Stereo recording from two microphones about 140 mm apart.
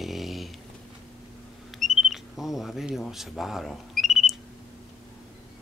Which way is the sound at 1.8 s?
Centre (ahead or behind).